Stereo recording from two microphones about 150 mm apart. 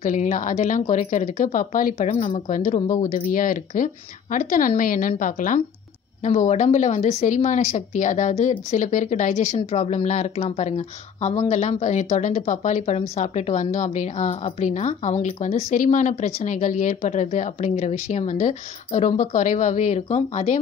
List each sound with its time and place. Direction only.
0.0 s speech: 60° left (ahead or behind)
2.0 s a woman's voice: 45° left (ahead or behind)
2.5 s speech: 60° left (ahead or behind)
6.2 s a woman's voice: 50° left (ahead or behind)